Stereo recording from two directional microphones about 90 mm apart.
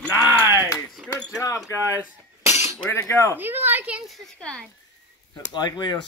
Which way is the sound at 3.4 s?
25° right (ahead or behind).